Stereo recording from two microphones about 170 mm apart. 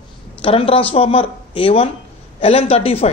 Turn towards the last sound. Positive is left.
turn(degrees=35)  # may be behind; listen again after turning